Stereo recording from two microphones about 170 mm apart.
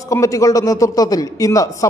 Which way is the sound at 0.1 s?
20° left (ahead or behind).